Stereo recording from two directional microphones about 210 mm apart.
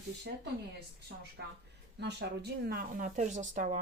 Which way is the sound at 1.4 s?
55° right (ahead or behind).